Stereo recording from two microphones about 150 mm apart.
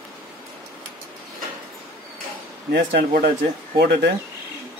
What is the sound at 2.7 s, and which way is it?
A man's voice, 90° right.